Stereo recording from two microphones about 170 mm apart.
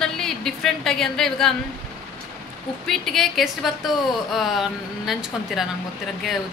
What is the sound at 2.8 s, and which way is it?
A woman's voice, centre (ahead or behind).